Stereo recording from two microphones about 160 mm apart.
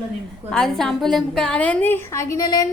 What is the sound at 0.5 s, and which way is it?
A woman's voice, centre (ahead or behind).